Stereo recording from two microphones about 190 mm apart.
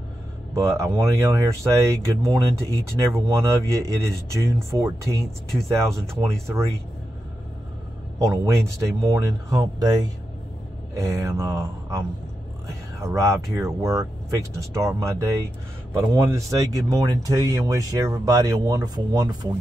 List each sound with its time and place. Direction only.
0.6 s speech: 15° right (ahead or behind)
5.5 s speech: centre (ahead or behind)
8.2 s speech: 15° right (ahead or behind)
11.0 s speech: 15° right (ahead or behind)
13.0 s speech: 15° right (ahead or behind)